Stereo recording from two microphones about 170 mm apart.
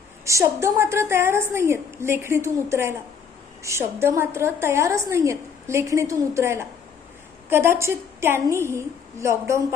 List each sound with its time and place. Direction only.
0.3 s a woman's voice: 15° right (ahead or behind)